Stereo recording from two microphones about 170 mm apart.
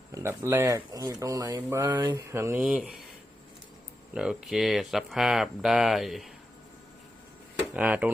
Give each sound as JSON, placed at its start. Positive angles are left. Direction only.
{"t": 0.1, "sound": "speech", "side_deg": -15}
{"t": 4.1, "sound": "speech", "side_deg": -5}
{"t": 7.7, "sound": "speech", "side_deg": -10}